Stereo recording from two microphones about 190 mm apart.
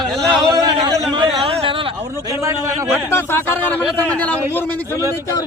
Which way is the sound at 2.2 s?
15° right (ahead or behind).